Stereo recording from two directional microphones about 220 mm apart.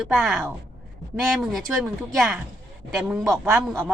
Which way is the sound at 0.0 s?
Centre (ahead or behind).